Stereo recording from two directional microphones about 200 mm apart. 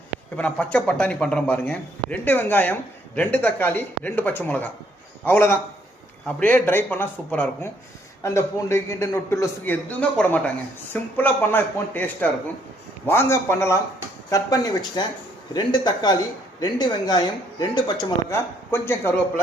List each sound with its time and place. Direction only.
0.3 s speech: 5° left (ahead or behind)